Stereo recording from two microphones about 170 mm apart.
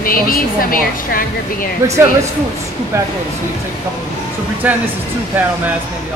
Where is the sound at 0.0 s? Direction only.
55° left (ahead or behind).